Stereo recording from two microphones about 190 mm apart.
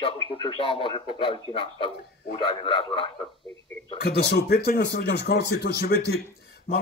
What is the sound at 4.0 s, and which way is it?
Speech, 60° left (ahead or behind).